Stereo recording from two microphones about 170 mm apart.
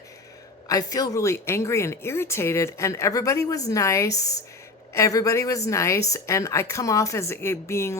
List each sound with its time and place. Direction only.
0.7 s a woman's voice: 20° left (ahead or behind)